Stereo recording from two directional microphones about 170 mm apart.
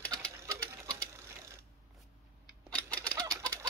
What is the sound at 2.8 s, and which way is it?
Fowl, 5° left (ahead or behind).